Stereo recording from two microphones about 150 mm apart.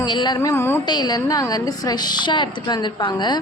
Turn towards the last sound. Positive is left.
turn(degrees=30)  # may be behind; listen again after turning